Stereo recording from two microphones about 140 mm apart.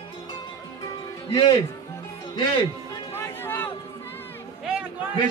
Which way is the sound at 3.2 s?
15° left (ahead or behind).